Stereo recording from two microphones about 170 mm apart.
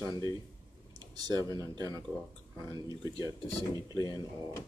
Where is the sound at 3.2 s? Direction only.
25° left (ahead or behind).